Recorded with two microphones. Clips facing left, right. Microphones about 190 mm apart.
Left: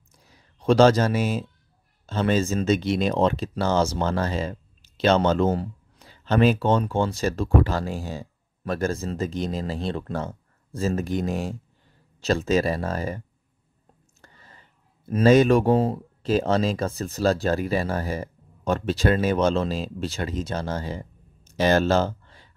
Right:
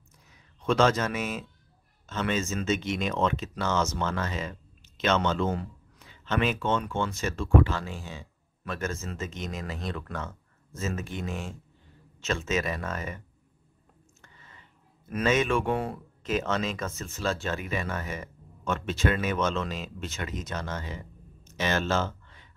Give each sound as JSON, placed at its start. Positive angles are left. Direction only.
{"t": 0.3, "sound": "a man's voice", "side_deg": 35}
{"t": 14.2, "sound": "speech", "side_deg": 35}
{"t": 21.5, "sound": "a sound", "side_deg": 35}